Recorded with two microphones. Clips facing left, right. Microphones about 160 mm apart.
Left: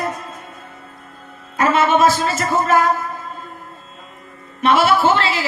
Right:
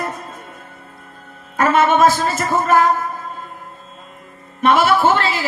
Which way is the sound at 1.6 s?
50° right (ahead or behind).